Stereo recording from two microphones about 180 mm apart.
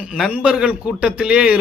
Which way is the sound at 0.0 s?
5° right (ahead or behind).